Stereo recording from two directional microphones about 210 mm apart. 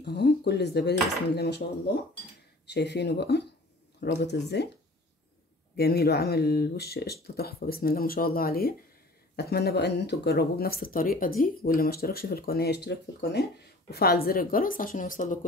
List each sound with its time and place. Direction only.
0.0 s speech: 50° left (ahead or behind)
2.6 s speech: 55° left (ahead or behind)
5.8 s speech: 50° left (ahead or behind)